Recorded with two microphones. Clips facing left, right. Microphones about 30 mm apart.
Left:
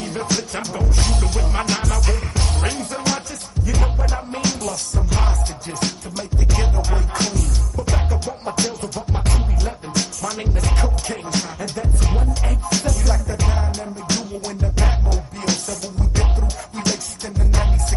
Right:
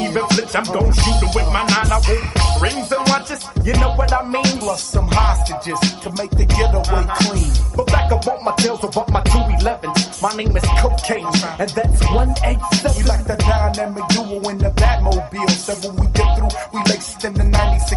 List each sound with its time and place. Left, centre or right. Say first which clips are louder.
0.0 s music: right 6 dB; right